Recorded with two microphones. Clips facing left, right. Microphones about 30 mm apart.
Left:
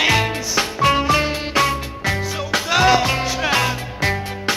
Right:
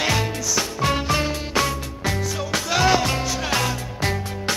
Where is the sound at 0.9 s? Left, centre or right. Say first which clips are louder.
Left 5 dB; left.